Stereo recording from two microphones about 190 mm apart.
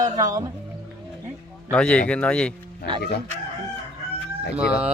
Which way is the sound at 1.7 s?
5° left (ahead or behind).